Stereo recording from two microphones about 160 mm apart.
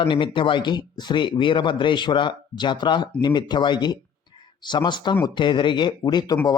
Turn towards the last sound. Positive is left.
turn(degrees=25)  # may be behind; listen again after turning